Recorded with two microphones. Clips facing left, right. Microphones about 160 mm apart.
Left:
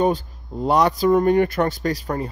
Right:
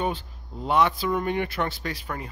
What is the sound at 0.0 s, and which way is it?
Speech, 40° left (ahead or behind).